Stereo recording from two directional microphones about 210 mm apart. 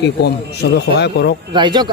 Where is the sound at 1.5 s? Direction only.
20° right (ahead or behind).